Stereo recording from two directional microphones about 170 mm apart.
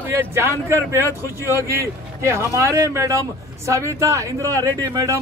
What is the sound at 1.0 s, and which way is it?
Speech, 20° left (ahead or behind).